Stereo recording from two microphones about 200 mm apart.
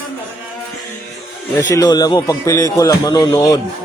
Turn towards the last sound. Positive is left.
turn(degrees=15)  # may be behind; listen again after turning